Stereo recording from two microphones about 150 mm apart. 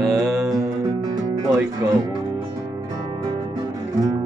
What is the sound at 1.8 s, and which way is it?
Music, 15° right (ahead or behind).